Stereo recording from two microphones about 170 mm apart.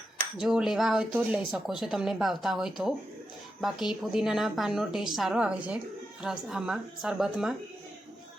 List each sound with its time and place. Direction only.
0.3 s speech: centre (ahead or behind)